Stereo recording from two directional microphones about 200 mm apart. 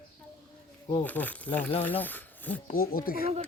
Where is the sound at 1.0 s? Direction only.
10° left (ahead or behind).